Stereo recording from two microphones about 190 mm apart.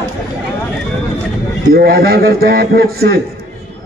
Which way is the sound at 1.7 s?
50° right (ahead or behind).